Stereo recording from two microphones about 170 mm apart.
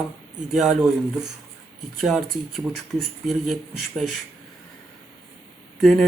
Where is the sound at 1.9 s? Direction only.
Centre (ahead or behind).